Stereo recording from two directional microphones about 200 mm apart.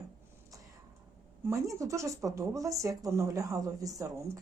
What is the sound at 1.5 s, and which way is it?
Speech, 15° right (ahead or behind).